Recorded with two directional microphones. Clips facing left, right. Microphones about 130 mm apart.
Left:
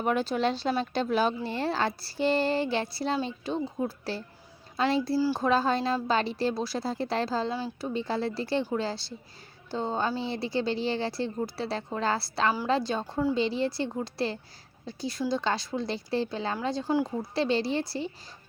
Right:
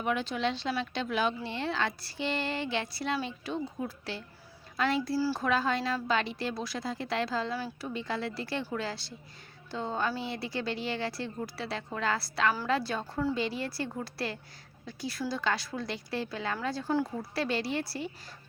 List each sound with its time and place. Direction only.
0.0 s speech: 40° left (ahead or behind)
5.1 s speech: 20° left (ahead or behind)
5.5 s speech: 30° left (ahead or behind)
7.5 s speech: 20° left (ahead or behind)
7.9 s speech: 30° left (ahead or behind)
16.6 s speech: 20° left (ahead or behind)